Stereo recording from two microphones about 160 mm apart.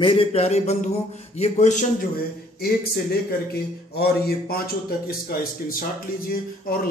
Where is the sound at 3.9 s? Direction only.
85° left.